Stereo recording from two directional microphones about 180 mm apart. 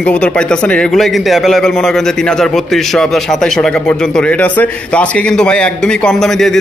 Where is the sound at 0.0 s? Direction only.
5° left (ahead or behind).